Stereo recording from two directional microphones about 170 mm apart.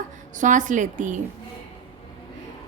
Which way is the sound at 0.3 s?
50° right (ahead or behind).